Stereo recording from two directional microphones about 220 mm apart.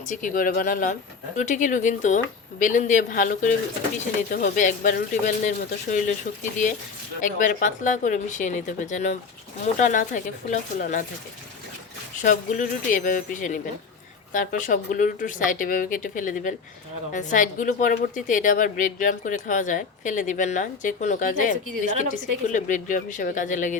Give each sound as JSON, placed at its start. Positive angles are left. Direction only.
{"t": 0.1, "sound": "a woman's voice", "side_deg": 35}
{"t": 7.2, "sound": "a woman's voice", "side_deg": 35}
{"t": 12.2, "sound": "a woman's voice", "side_deg": 35}